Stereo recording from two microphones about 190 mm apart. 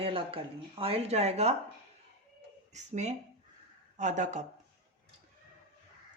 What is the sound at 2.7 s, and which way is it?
Speech, 40° right (ahead or behind).